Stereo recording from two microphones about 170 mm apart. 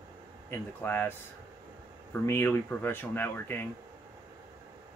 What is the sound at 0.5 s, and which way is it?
Speech, 10° left (ahead or behind).